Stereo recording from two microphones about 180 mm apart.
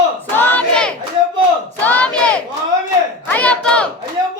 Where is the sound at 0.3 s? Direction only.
10° left (ahead or behind).